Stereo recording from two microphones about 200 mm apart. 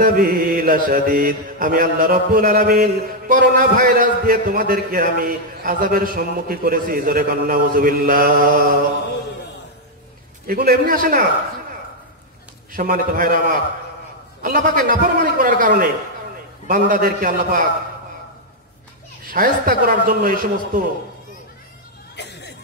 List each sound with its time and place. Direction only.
0.0 s mantra: 45° right (ahead or behind)
10.4 s mantra: 50° right (ahead or behind)
12.7 s mantra: 45° right (ahead or behind)
19.3 s mantra: 45° right (ahead or behind)
22.1 s cough: 55° left (ahead or behind)